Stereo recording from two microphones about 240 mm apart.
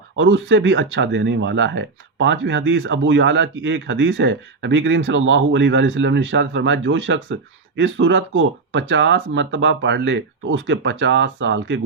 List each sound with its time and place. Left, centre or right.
0.2 s speech: right